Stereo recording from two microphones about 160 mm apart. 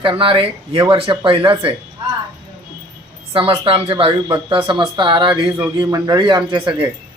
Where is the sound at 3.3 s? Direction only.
35° right (ahead or behind).